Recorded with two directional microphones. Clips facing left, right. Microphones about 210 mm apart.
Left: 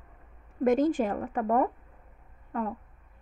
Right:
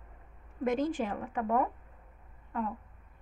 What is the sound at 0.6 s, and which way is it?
A woman's voice, 45° left (ahead or behind).